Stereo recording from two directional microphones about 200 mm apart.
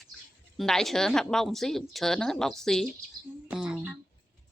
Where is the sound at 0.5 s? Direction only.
Centre (ahead or behind).